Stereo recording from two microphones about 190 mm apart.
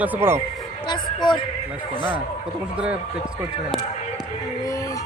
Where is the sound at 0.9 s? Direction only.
25° left (ahead or behind).